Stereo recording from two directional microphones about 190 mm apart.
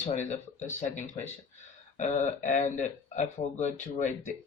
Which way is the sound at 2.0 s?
40° left (ahead or behind).